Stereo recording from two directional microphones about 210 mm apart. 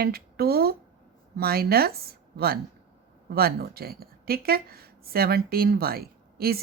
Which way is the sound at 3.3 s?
45° right (ahead or behind).